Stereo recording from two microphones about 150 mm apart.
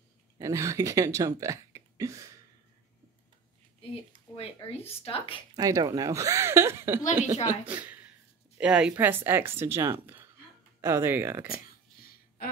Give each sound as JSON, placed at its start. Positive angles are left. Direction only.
{"t": 0.4, "sound": "speech", "side_deg": -20}
{"t": 4.4, "sound": "speech", "side_deg": 40}
{"t": 5.6, "sound": "a woman's voice", "side_deg": -25}